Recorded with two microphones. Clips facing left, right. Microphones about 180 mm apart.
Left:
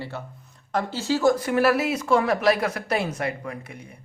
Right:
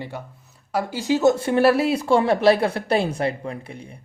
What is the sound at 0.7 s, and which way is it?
Speech, 15° right (ahead or behind).